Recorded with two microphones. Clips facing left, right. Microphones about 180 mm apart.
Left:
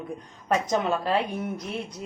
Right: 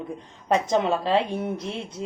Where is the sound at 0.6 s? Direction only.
25° right (ahead or behind).